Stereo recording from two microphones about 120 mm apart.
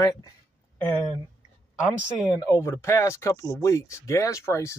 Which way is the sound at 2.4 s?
20° left (ahead or behind).